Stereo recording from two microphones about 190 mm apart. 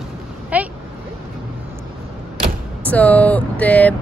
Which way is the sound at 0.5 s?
10° right (ahead or behind).